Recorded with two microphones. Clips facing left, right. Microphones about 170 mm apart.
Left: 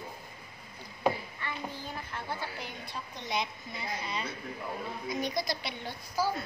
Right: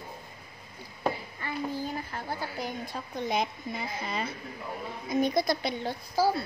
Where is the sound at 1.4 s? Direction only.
40° right (ahead or behind).